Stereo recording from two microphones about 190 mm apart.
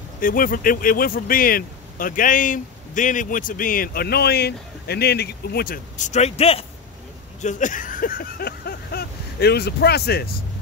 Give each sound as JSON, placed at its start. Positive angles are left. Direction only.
{"t": 0.2, "sound": "speech", "side_deg": 45}